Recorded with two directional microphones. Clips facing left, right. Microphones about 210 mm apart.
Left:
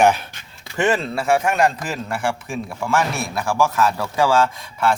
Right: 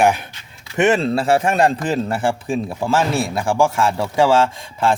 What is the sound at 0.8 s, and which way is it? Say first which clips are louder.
A man's voice: right 4 dB; 20° right (ahead or behind).